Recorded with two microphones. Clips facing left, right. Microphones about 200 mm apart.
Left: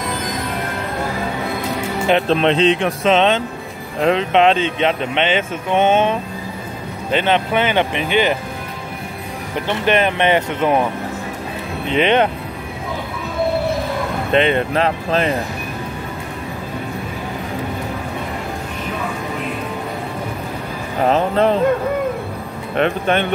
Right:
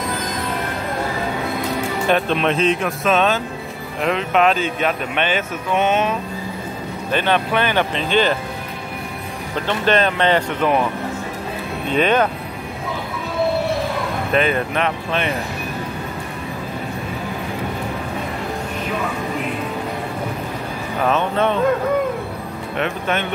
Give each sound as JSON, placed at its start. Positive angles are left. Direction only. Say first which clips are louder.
{"t": 2.2, "sound": "speech", "louder": "left 4 dB", "side_deg": 30}
{"t": 2.5, "sound": "speech", "louder": "left 3 dB", "side_deg": 90}
{"t": 2.8, "sound": "speech", "louder": "left 3 dB", "side_deg": 30}
{"t": 9.7, "sound": "speech", "louder": "left 1 dB", "side_deg": 15}
{"t": 11.9, "sound": "speech", "louder": "left 2 dB", "side_deg": 20}
{"t": 14.3, "sound": "speech", "louder": "left 3 dB", "side_deg": 25}
{"t": 21.0, "sound": "speech", "louder": "left 3 dB", "side_deg": 30}
{"t": 22.8, "sound": "speech", "louder": "left 5 dB", "side_deg": 30}